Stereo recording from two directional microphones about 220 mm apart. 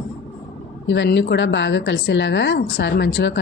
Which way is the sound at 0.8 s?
55° left (ahead or behind).